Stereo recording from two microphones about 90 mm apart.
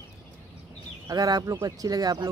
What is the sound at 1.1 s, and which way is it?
Speech, 45° right (ahead or behind).